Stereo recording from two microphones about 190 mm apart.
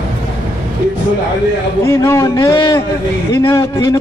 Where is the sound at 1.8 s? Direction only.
15° left (ahead or behind).